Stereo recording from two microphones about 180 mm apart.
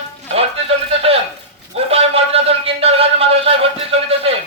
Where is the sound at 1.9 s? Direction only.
35° right (ahead or behind).